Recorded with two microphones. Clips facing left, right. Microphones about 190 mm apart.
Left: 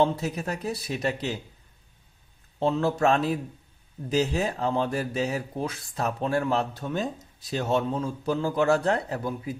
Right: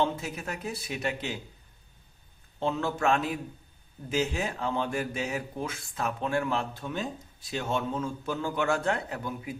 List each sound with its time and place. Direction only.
0.0 s speech: 40° left (ahead or behind)
2.6 s speech: 35° left (ahead or behind)